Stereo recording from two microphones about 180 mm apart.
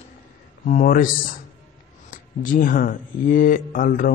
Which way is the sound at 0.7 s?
50° left (ahead or behind).